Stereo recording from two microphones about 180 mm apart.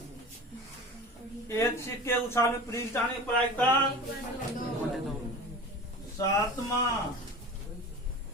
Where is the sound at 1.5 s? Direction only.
15° left (ahead or behind).